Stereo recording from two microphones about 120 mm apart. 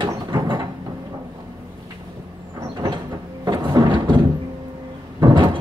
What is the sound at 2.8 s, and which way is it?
Mechanisms, 35° right (ahead or behind).